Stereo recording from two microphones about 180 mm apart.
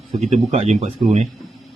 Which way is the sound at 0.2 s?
35° right (ahead or behind).